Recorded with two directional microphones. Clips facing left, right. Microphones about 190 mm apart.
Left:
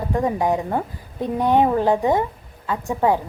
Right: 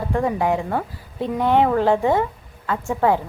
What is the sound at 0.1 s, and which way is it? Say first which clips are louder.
A woman's voice: even; 20° left (ahead or behind).